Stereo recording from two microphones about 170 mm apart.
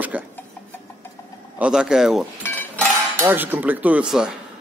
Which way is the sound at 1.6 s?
5° right (ahead or behind).